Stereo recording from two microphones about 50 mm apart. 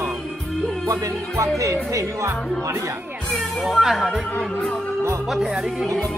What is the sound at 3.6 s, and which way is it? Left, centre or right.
Speech, centre.